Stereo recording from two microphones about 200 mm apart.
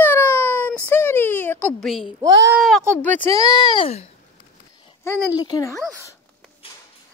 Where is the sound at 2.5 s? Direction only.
Centre (ahead or behind).